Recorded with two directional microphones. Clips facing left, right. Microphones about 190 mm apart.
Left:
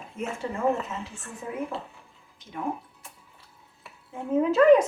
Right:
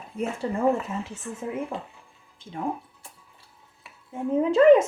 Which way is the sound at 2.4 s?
30° right (ahead or behind).